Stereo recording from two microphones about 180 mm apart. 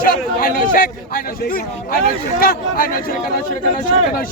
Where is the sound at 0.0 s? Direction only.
50° left (ahead or behind).